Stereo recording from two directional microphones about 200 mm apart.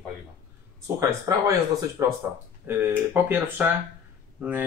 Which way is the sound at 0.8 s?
15° right (ahead or behind).